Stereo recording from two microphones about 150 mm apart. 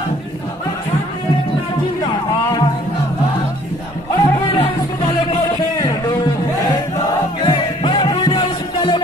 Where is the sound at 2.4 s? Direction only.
25° left (ahead or behind).